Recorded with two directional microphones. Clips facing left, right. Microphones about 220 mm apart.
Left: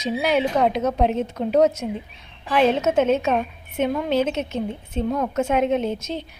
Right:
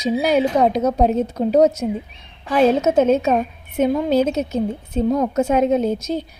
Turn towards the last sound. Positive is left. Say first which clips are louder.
# right 5 dB
turn(degrees=-40)  # may be behind; listen again after turning